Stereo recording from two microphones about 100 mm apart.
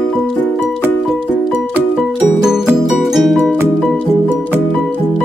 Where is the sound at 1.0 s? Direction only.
5° right (ahead or behind).